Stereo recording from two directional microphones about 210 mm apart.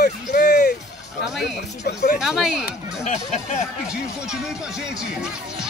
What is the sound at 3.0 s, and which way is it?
Speech, 35° left (ahead or behind).